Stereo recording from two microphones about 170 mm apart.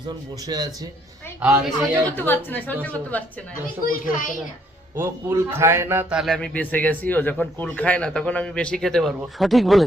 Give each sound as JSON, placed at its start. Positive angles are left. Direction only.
{"t": 0.4, "sound": "a man's voice", "side_deg": -20}
{"t": 2.0, "sound": "a woman's voice", "side_deg": 10}
{"t": 3.8, "sound": "a child's voice", "side_deg": 55}
{"t": 4.9, "sound": "a man's voice", "side_deg": -15}